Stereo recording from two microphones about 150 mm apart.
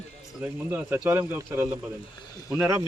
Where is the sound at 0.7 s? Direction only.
10° right (ahead or behind).